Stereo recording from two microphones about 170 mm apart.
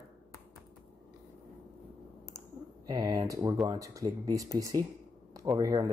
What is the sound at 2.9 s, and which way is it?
Speech, 25° right (ahead or behind).